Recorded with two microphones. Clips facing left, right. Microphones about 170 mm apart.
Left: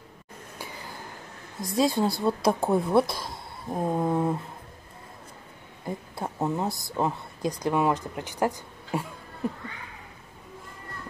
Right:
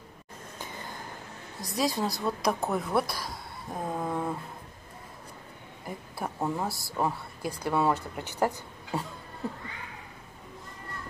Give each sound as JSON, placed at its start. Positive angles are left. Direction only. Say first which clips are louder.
{"t": 1.8, "sound": "speech", "louder": "left 5 dB", "side_deg": 25}
{"t": 5.9, "sound": "speech", "louder": "left 3 dB", "side_deg": 20}